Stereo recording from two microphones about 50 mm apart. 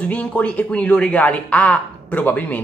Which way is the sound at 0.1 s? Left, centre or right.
Left.